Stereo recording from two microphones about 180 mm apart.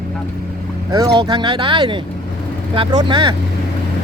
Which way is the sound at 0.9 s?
20° right (ahead or behind).